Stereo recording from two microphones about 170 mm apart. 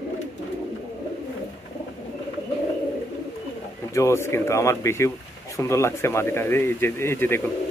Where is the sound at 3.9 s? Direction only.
15° left (ahead or behind).